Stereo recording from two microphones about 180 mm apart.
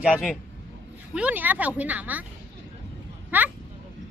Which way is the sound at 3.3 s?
10° right (ahead or behind).